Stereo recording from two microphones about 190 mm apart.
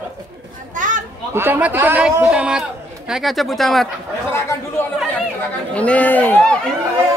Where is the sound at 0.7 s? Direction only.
45° right (ahead or behind).